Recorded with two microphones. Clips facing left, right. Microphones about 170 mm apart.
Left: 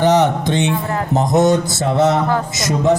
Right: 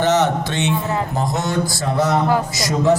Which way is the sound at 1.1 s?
20° left (ahead or behind).